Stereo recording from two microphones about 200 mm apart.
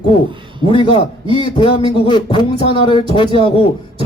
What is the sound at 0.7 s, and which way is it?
A man's voice, 25° left (ahead or behind).